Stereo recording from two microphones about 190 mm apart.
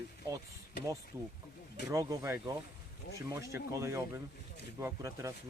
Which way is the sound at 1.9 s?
15° right (ahead or behind).